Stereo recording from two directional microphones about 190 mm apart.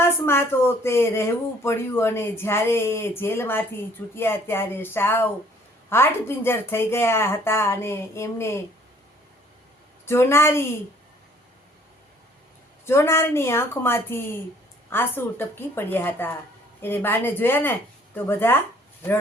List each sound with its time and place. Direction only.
0.0 s speech: 10° left (ahead or behind)
10.1 s speech: 15° left (ahead or behind)
12.8 s speech: 15° left (ahead or behind)